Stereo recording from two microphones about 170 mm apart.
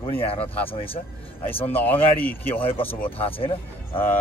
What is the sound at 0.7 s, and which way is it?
Speech, 30° left (ahead or behind).